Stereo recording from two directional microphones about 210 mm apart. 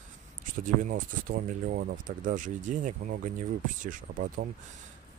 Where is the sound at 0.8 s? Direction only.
40° right (ahead or behind).